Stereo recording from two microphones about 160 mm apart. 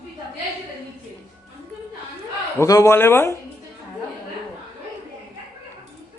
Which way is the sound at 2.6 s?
20° left (ahead or behind).